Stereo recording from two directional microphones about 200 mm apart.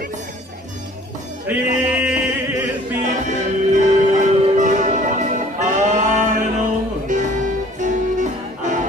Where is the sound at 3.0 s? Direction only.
40° right (ahead or behind).